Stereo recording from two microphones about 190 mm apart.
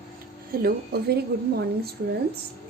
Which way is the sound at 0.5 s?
50° right (ahead or behind).